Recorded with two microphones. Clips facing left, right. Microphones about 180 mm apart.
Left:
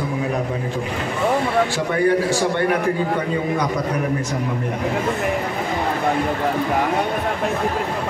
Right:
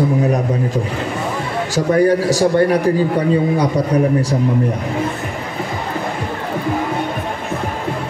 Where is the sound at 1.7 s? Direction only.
40° right (ahead or behind).